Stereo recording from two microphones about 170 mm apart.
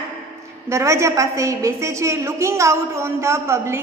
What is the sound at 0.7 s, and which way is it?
A woman's voice, 15° right (ahead or behind).